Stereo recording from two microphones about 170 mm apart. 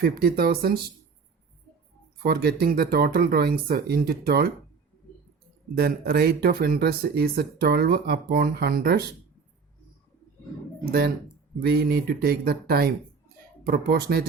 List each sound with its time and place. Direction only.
0.0 s speech: 65° right (ahead or behind)
2.2 s speech: 65° right (ahead or behind)
5.7 s speech: 65° right (ahead or behind)
11.6 s speech: 65° right (ahead or behind)